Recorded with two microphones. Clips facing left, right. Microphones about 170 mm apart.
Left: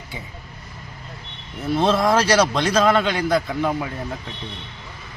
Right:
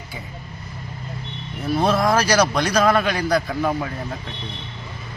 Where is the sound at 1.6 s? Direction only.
25° left (ahead or behind).